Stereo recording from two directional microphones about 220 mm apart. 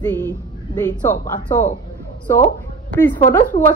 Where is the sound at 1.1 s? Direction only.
35° left (ahead or behind).